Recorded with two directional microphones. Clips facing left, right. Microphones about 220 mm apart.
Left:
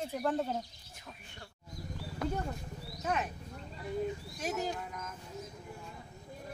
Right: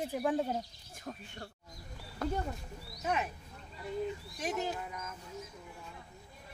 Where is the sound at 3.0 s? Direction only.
Centre (ahead or behind).